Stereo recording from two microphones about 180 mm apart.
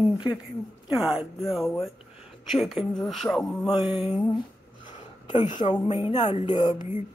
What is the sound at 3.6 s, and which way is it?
Speech, 20° left (ahead or behind).